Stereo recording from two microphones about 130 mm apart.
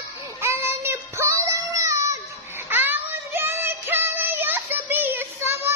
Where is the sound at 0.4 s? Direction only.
20° right (ahead or behind).